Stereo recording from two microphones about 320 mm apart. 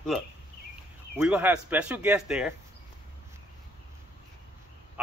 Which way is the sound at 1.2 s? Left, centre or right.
Centre.